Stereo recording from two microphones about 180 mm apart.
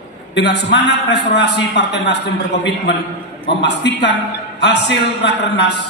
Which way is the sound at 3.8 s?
80° left.